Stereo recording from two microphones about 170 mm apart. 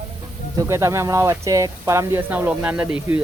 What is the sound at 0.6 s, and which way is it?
Speech, 20° right (ahead or behind).